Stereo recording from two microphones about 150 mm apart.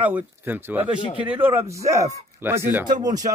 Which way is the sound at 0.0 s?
10° right (ahead or behind).